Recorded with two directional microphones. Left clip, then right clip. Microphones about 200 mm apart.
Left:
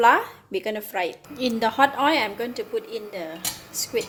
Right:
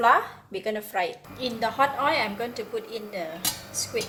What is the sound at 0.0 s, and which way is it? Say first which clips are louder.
A woman's voice: left 3 dB; 45° left (ahead or behind).